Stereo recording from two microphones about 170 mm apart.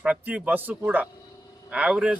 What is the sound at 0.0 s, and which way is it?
Speech, 5° right (ahead or behind).